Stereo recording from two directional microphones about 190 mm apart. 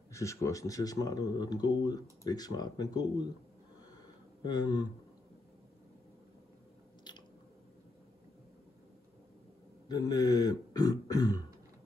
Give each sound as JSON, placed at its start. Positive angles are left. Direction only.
{"t": 0.1, "sound": "speech", "side_deg": 15}
{"t": 4.4, "sound": "speech", "side_deg": 20}
{"t": 7.1, "sound": "biting", "side_deg": 25}
{"t": 9.8, "sound": "speech", "side_deg": 20}